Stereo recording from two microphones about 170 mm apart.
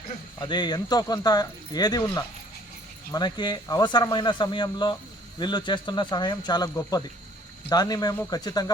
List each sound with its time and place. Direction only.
0.3 s speech: 25° left (ahead or behind)